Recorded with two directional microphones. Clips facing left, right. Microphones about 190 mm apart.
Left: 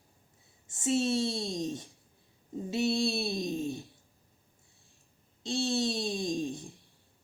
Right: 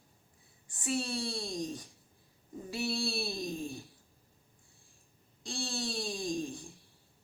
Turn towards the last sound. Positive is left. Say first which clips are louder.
# left 3 dB
turn(degrees=20)  # may be behind; listen again after turning